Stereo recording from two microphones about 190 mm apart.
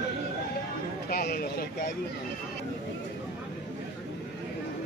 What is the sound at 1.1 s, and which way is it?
Speech, 55° left (ahead or behind).